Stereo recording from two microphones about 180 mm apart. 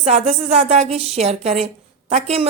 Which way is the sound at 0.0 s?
35° right (ahead or behind).